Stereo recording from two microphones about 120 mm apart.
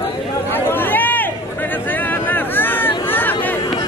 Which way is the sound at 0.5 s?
15° left (ahead or behind).